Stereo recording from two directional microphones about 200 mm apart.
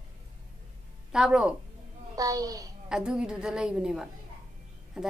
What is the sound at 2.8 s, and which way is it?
A woman's voice, 5° right (ahead or behind).